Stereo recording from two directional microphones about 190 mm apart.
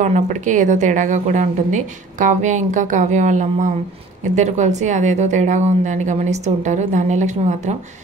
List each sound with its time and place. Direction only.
0.0 s speech: 40° right (ahead or behind)